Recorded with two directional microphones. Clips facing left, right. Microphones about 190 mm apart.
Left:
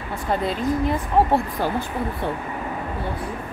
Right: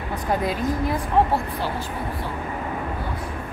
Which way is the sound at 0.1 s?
10° right (ahead or behind).